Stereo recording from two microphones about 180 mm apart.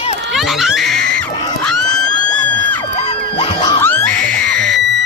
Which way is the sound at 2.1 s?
90° right.